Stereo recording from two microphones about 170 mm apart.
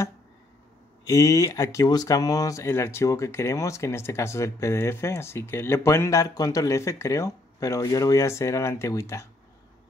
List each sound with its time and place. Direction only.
1.0 s speech: 20° left (ahead or behind)